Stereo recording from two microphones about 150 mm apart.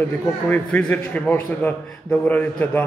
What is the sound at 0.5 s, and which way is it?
A man's voice, 5° left (ahead or behind).